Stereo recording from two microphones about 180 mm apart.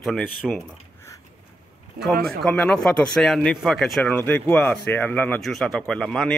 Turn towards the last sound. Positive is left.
turn(degrees=0)  # may be behind; listen again after turning